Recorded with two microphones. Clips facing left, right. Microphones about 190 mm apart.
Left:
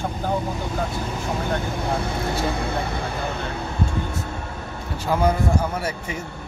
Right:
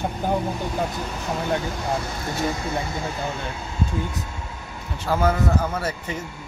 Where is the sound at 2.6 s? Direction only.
60° left (ahead or behind).